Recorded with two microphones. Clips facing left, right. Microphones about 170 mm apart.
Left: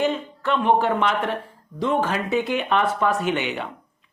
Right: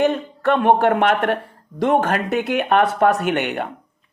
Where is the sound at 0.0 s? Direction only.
55° right (ahead or behind).